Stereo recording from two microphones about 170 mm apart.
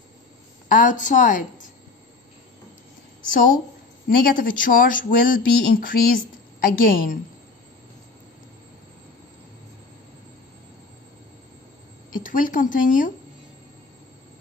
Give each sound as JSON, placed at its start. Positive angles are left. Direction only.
{"t": 0.7, "sound": "a woman's voice", "side_deg": 50}
{"t": 3.3, "sound": "a woman's voice", "side_deg": 55}
{"t": 12.2, "sound": "a woman's voice", "side_deg": 50}